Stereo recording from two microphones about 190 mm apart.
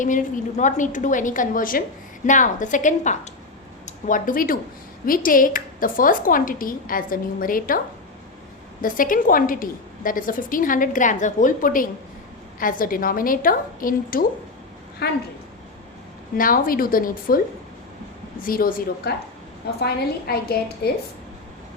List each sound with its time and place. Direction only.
0.0 s a woman's voice: 40° left (ahead or behind)
8.8 s a woman's voice: 45° left (ahead or behind)
16.4 s a woman's voice: 50° left (ahead or behind)
18.4 s a woman's voice: 50° left (ahead or behind)